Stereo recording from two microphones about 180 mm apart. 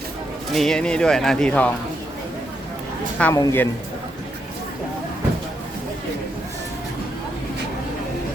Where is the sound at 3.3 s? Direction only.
15° left (ahead or behind).